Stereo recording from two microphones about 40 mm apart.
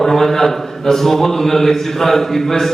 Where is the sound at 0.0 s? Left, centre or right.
Centre.